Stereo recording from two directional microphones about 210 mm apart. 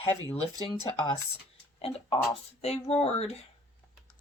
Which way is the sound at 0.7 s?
20° left (ahead or behind).